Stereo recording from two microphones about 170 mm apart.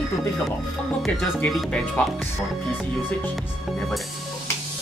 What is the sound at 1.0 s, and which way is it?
Speech, 10° left (ahead or behind).